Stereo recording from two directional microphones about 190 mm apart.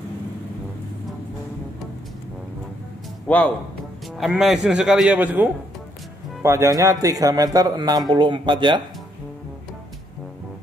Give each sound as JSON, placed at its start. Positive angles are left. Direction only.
{"t": 3.3, "sound": "a man's voice", "side_deg": 5}